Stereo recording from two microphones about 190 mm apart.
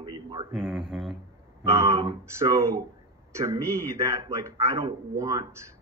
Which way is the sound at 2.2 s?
15° right (ahead or behind).